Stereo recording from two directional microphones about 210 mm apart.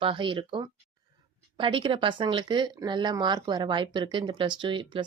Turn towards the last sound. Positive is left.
turn(degrees=-25)  # may be behind; listen again after turning